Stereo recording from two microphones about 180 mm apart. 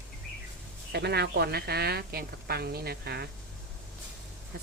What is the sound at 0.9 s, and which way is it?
A woman's voice, 65° right (ahead or behind).